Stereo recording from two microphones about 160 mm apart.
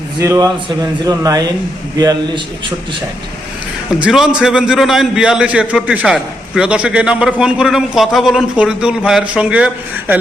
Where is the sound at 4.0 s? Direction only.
5° right (ahead or behind).